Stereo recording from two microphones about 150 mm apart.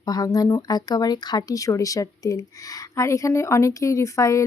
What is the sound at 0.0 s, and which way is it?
Speech, 25° left (ahead or behind).